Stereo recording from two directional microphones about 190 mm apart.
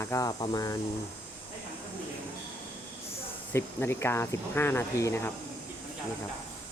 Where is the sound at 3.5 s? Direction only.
10° left (ahead or behind).